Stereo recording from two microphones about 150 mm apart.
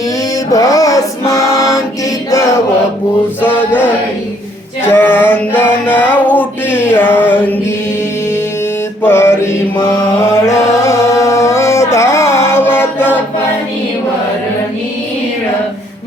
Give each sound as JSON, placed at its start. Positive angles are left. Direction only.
{"t": 0.5, "sound": "music", "side_deg": 20}
{"t": 4.9, "sound": "mantra", "side_deg": 15}
{"t": 5.8, "sound": "music", "side_deg": 10}
{"t": 6.9, "sound": "mantra", "side_deg": 15}
{"t": 9.0, "sound": "mantra", "side_deg": 15}
{"t": 10.4, "sound": "carnatic music", "side_deg": 20}